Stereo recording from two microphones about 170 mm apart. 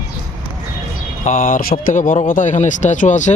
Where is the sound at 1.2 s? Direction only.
50° left (ahead or behind).